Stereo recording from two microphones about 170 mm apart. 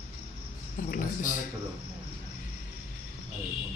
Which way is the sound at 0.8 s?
55° left (ahead or behind).